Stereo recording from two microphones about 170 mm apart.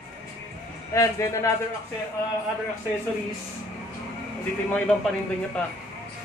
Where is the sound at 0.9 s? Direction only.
20° left (ahead or behind).